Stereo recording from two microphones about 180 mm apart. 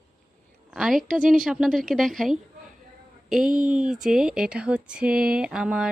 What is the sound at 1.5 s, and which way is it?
Speech, centre (ahead or behind).